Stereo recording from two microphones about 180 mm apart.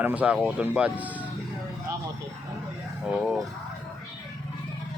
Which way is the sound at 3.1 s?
Centre (ahead or behind).